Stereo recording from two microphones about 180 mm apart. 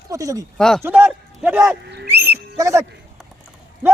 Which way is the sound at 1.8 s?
70° right (ahead or behind).